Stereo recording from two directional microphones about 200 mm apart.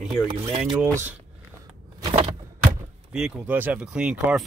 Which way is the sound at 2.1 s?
25° right (ahead or behind).